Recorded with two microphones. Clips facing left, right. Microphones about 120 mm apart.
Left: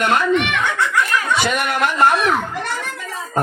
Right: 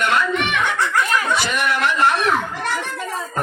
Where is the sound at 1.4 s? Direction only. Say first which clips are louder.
Left 2 dB; 55° left (ahead or behind).